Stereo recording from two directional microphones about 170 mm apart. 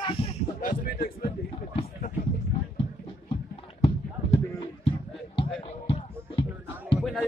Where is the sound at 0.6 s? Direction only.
55° left (ahead or behind).